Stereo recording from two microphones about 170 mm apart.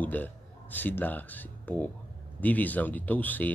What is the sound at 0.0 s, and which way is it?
Speech, 10° left (ahead or behind).